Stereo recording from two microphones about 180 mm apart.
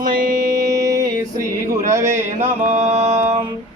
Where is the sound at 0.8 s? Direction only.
20° right (ahead or behind).